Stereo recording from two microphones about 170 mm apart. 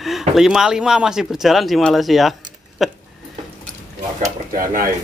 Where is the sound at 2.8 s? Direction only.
Centre (ahead or behind).